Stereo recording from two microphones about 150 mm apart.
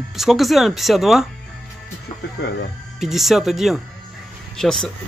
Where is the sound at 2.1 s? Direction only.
35° left (ahead or behind).